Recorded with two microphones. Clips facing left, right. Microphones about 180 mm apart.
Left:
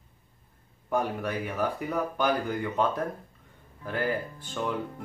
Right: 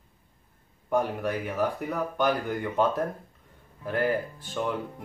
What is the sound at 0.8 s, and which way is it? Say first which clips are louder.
Speech: right 2 dB; centre (ahead or behind).